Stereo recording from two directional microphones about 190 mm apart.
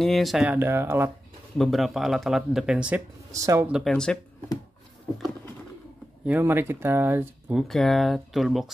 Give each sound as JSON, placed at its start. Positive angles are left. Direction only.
{"t": 0.0, "sound": "speech", "side_deg": 0}
{"t": 1.6, "sound": "speech", "side_deg": 0}
{"t": 3.3, "sound": "speech", "side_deg": -15}
{"t": 3.7, "sound": "speech", "side_deg": 0}
{"t": 6.2, "sound": "speech", "side_deg": -10}